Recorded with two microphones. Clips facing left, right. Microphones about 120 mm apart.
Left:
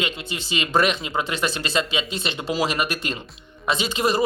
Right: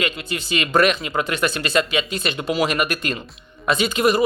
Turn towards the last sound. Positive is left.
turn(degrees=30)  # may be behind; listen again after turning